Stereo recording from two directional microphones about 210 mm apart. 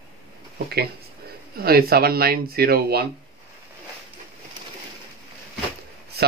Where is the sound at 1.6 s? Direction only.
45° right (ahead or behind).